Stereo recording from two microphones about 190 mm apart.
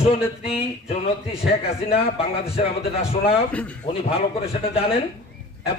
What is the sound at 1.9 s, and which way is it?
Speech, 30° left (ahead or behind).